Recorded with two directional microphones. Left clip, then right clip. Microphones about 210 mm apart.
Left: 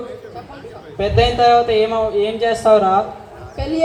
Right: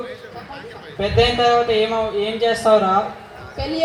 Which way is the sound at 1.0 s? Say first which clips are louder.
Left 2 dB; 25° right (ahead or behind).